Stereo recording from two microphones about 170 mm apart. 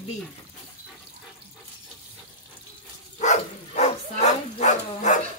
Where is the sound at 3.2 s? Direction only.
40° left (ahead or behind).